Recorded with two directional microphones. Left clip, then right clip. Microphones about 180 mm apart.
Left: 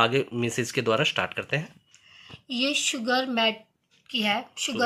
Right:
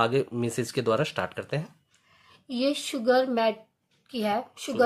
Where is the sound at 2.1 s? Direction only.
45° right (ahead or behind).